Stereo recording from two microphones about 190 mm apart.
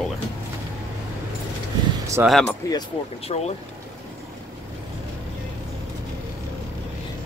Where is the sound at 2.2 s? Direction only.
15° right (ahead or behind).